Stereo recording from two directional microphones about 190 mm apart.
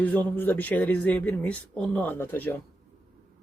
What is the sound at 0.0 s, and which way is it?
Speech, 10° left (ahead or behind).